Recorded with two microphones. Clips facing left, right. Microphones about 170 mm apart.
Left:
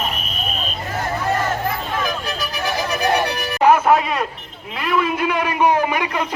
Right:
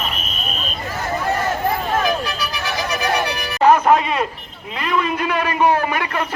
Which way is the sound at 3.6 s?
10° left (ahead or behind).